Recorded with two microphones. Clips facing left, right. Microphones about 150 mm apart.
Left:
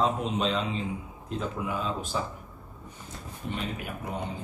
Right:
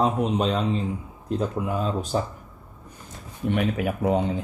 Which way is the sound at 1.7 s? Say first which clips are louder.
Right 5 dB; 40° right (ahead or behind).